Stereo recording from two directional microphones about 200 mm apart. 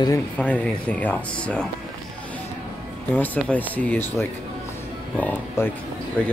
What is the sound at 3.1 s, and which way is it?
Speech, 10° left (ahead or behind).